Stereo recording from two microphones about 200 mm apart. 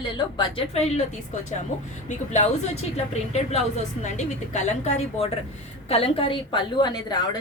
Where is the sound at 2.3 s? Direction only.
35° left (ahead or behind).